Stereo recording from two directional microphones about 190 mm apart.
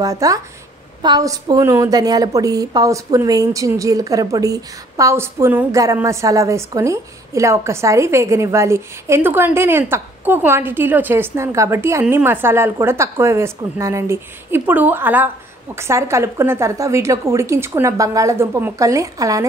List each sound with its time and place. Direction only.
0.0 s a woman's voice: 15° right (ahead or behind)